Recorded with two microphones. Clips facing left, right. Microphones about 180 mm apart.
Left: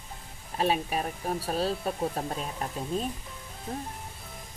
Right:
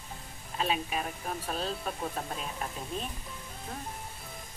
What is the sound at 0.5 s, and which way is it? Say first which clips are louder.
Speech: left 4 dB; 40° left (ahead or behind).